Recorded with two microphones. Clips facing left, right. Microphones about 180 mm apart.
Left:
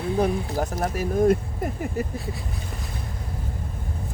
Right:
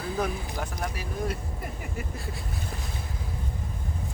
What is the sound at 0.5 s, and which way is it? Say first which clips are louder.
Speech: left 8 dB; 40° left (ahead or behind).